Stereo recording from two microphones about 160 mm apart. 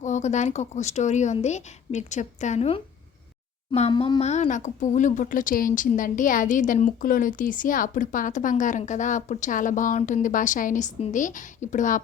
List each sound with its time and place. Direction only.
0.0 s a woman's voice: 50° left (ahead or behind); by 4.2 s 35° left (ahead or behind)
4.2 s a woman's voice: 45° left (ahead or behind)